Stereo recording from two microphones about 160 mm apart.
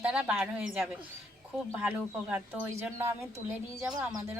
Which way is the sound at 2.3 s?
15° right (ahead or behind).